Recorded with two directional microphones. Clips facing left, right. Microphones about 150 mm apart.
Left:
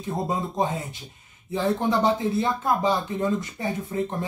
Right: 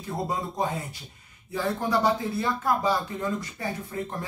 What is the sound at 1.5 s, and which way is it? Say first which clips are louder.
Speech: left 3 dB; 20° left (ahead or behind).